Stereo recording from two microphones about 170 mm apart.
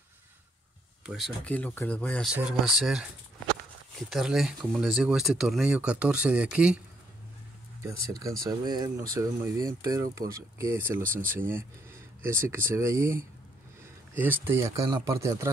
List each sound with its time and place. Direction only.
1.0 s speech: centre (ahead or behind)
2.2 s speech: 5° right (ahead or behind)
4.1 s speech: centre (ahead or behind)
7.8 s speech: 20° right (ahead or behind)